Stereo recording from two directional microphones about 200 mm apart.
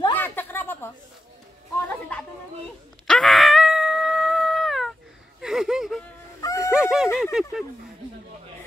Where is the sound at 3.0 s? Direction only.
Centre (ahead or behind).